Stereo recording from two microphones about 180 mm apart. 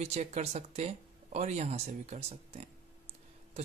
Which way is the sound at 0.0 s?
40° right (ahead or behind).